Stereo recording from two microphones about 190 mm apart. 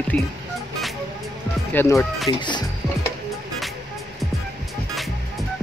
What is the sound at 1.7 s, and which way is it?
Speech, 10° left (ahead or behind).